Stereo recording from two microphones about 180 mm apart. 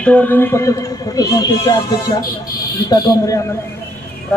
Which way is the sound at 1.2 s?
20° left (ahead or behind).